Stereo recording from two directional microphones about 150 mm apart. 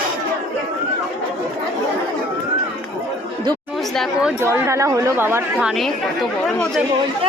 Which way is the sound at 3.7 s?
Centre (ahead or behind).